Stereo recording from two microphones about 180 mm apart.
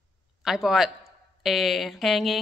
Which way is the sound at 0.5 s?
Centre (ahead or behind).